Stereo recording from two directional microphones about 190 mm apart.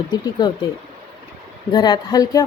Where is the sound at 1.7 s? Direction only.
20° left (ahead or behind).